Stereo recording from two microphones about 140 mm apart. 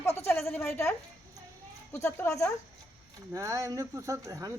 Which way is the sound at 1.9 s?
20° left (ahead or behind).